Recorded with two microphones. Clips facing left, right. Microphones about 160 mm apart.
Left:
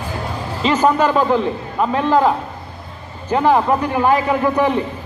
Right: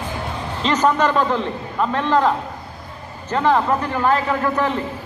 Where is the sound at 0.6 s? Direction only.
10° left (ahead or behind).